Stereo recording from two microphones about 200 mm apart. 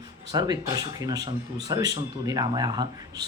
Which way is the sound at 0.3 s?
20° right (ahead or behind).